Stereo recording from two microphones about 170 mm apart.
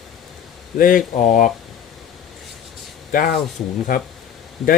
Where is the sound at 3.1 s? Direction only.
60° left (ahead or behind).